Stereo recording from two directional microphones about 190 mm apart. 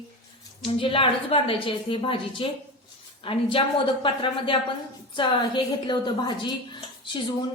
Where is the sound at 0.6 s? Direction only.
30° left (ahead or behind).